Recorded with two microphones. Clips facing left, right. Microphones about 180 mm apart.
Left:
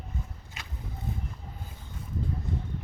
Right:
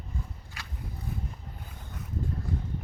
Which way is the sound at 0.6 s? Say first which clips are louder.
Even; 20° left (ahead or behind).